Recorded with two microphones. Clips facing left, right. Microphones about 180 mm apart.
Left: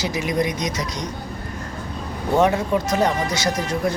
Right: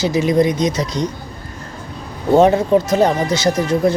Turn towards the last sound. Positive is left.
turn(degrees=-30)  # may be behind; listen again after turning